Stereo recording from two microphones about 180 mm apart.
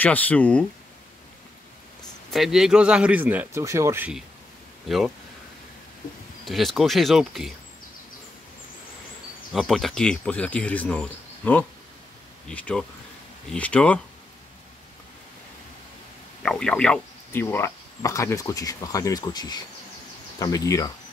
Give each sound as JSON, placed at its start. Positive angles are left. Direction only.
{"t": 0.0, "sound": "speech", "side_deg": 10}
{"t": 2.3, "sound": "speech", "side_deg": 0}
{"t": 4.8, "sound": "speech", "side_deg": 0}
{"t": 6.4, "sound": "speech", "side_deg": 0}
{"t": 9.5, "sound": "speech", "side_deg": 0}
{"t": 16.4, "sound": "speech", "side_deg": 5}